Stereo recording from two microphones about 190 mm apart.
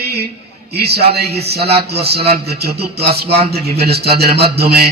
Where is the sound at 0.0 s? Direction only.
55° right (ahead or behind).